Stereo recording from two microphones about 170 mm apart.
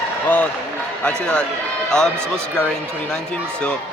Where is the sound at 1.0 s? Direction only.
5° left (ahead or behind).